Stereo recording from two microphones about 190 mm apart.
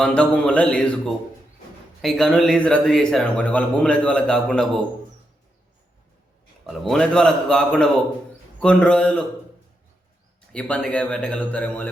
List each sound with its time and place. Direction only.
0.0 s a man's voice: 5° left (ahead or behind)
6.7 s a man's voice: centre (ahead or behind)
10.5 s a man's voice: 5° left (ahead or behind)